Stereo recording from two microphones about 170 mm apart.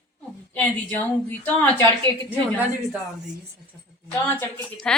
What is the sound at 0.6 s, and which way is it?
A woman's voice, 10° left (ahead or behind).